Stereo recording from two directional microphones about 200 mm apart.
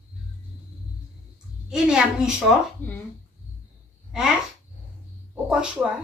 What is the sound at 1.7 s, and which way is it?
Speech, 5° right (ahead or behind).